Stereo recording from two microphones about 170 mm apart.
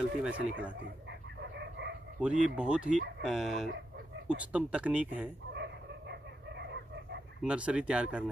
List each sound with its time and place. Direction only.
0.2 s speech: 10° right (ahead or behind)
1.4 s dog: 90° right
2.1 s speech: 5° right (ahead or behind)
5.5 s dog: 90° right
7.4 s speech: 5° right (ahead or behind)